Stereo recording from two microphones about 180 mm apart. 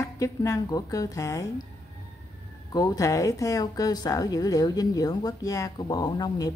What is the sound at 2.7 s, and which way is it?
Speech, 20° left (ahead or behind).